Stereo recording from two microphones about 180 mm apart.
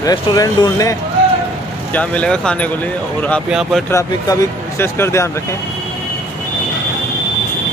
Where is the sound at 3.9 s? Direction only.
20° left (ahead or behind).